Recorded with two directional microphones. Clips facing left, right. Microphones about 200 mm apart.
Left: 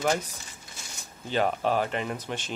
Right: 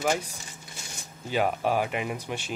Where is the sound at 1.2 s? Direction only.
10° right (ahead or behind).